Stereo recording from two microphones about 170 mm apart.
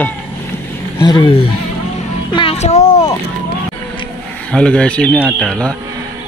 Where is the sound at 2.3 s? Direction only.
30° left (ahead or behind).